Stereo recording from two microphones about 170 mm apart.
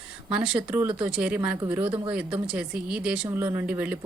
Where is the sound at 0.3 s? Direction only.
5° right (ahead or behind).